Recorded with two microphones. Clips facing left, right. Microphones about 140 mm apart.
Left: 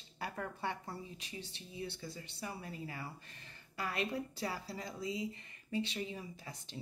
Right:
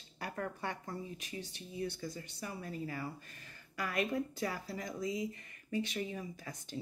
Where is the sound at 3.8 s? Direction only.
30° left (ahead or behind).